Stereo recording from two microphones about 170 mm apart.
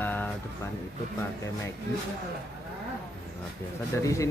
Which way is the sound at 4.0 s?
15° left (ahead or behind).